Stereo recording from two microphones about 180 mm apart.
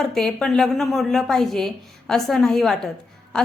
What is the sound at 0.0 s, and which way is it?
A woman's voice, centre (ahead or behind).